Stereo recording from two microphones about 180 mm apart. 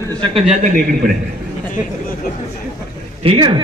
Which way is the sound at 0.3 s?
35° right (ahead or behind).